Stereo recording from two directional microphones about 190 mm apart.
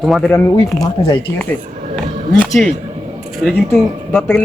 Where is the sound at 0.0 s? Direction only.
Centre (ahead or behind).